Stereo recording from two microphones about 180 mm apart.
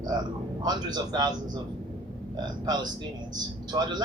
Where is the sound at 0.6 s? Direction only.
25° right (ahead or behind).